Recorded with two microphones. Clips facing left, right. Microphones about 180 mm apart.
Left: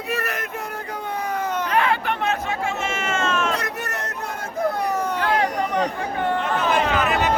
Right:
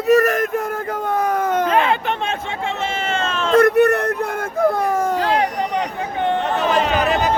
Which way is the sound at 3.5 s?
60° right (ahead or behind).